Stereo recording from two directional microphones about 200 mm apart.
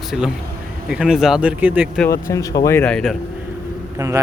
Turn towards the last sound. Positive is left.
turn(degrees=-20)  # may be behind; listen again after turning